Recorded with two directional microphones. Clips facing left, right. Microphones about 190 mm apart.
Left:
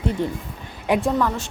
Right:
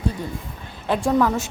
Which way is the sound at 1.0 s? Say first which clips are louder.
Right 2 dB; 5° right (ahead or behind).